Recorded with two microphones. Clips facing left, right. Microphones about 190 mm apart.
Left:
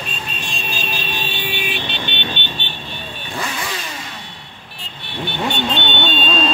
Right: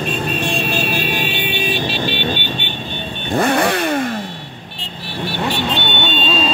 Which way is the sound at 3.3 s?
55° right (ahead or behind).